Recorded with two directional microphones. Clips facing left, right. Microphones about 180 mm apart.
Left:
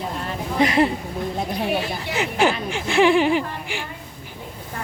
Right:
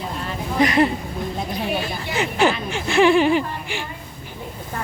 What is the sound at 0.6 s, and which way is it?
Speech, 25° left (ahead or behind).